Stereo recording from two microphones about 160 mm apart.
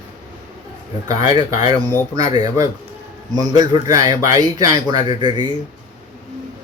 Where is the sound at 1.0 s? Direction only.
20° right (ahead or behind).